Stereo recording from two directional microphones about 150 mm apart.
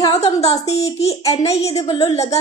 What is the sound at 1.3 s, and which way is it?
Speech, 45° left (ahead or behind).